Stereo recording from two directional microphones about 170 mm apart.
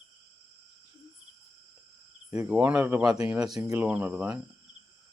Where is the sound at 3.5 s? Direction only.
20° right (ahead or behind).